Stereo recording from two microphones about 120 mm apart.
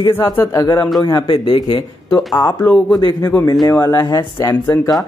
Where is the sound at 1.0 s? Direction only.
35° left (ahead or behind).